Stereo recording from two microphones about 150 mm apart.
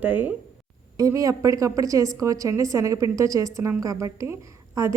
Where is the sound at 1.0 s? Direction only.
20° right (ahead or behind).